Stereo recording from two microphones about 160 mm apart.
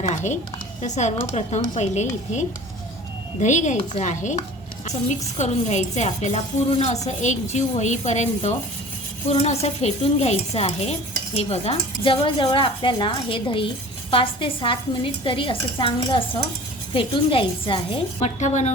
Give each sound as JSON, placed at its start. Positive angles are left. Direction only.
{"t": 0.0, "sound": "speech", "side_deg": 45}